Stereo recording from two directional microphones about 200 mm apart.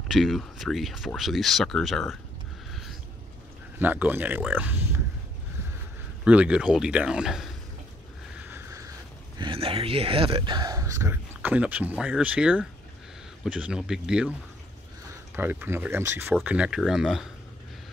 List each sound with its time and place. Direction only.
0.1 s speech: centre (ahead or behind)
3.8 s a man's voice: 10° right (ahead or behind)
6.2 s speech: 5° right (ahead or behind)
8.4 s a sound: 10° right (ahead or behind)
9.4 s speech: 25° right (ahead or behind); by 14.3 s 5° right (ahead or behind)
15.3 s a man's voice: 10° right (ahead or behind)